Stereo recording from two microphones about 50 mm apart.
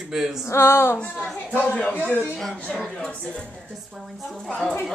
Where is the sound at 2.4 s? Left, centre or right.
Centre.